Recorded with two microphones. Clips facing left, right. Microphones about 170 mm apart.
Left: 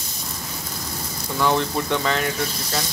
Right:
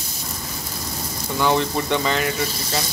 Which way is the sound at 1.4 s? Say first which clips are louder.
Right 1 dB; centre (ahead or behind).